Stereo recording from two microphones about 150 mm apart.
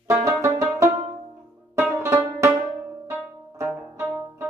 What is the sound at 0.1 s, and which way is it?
Music, 20° right (ahead or behind).